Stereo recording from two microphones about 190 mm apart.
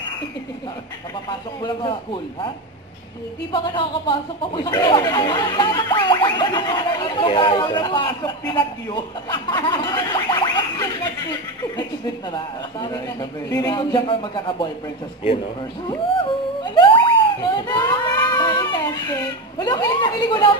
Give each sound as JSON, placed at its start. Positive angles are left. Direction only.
{"t": 1.6, "sound": "speech", "side_deg": 25}
{"t": 3.5, "sound": "speech", "side_deg": 25}
{"t": 17.0, "sound": "a sound", "side_deg": 25}